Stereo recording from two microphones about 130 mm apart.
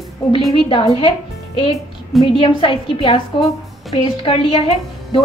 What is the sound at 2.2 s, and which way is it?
A woman's voice, 40° left (ahead or behind).